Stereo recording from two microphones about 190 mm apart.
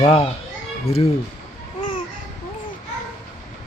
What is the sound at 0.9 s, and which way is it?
Speech, 35° left (ahead or behind).